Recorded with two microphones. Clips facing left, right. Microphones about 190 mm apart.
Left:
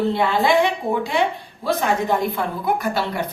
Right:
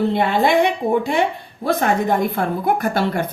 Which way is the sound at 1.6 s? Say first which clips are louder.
Right 3 dB; 55° right (ahead or behind).